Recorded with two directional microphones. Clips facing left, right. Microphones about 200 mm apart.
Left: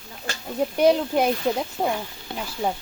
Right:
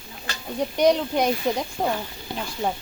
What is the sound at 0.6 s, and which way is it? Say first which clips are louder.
Speech: left 1 dB; 5° left (ahead or behind).